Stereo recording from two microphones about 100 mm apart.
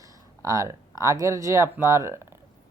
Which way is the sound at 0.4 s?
35° right (ahead or behind).